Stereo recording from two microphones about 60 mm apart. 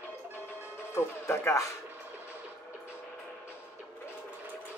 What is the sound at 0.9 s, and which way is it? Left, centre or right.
Speech, left.